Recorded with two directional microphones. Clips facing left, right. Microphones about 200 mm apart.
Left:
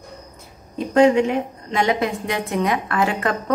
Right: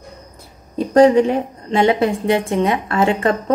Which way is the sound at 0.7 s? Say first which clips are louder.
Right 4 dB; 35° right (ahead or behind).